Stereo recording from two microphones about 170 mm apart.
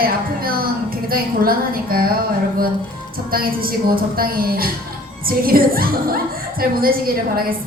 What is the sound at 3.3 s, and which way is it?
A woman's voice, 60° right (ahead or behind).